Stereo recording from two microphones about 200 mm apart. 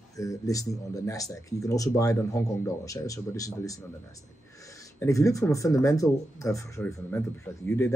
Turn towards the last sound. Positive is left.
turn(degrees=15)  # may be behind; listen again after turning